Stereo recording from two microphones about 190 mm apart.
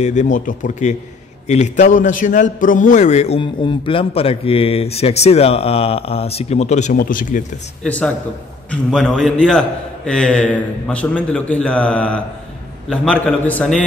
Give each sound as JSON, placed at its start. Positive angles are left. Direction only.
{"t": 0.0, "sound": "a man's voice", "side_deg": 40}
{"t": 7.8, "sound": "a man's voice", "side_deg": 5}